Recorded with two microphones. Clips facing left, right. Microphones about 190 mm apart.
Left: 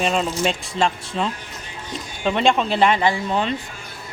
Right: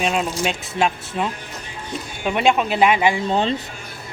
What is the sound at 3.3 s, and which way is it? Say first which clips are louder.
Speech: right 2 dB; 30° right (ahead or behind).